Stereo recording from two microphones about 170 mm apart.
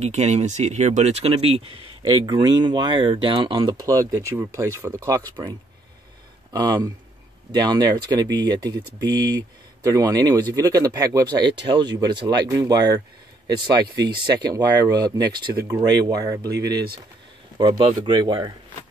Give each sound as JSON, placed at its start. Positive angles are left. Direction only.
{"t": 0.0, "sound": "speech", "side_deg": -40}
{"t": 6.5, "sound": "speech", "side_deg": -25}